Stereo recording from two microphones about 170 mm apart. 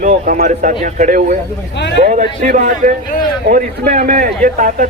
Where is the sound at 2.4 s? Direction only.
45° right (ahead or behind).